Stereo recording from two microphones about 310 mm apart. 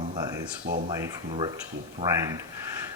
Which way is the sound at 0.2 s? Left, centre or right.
Centre.